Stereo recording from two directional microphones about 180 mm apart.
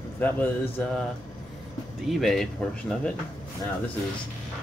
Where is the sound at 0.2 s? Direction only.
10° left (ahead or behind).